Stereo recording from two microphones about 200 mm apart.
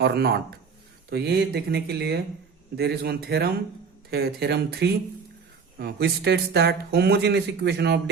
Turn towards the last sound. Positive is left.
turn(degrees=-55)  # may be behind; listen again after turning